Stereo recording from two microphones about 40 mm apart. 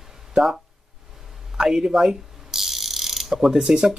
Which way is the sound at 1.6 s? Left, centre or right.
Centre.